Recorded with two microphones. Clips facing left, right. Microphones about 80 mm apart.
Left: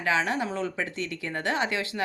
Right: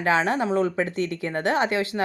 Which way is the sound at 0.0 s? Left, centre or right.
Right.